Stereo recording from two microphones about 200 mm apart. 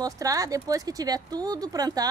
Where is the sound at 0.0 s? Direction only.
15° right (ahead or behind).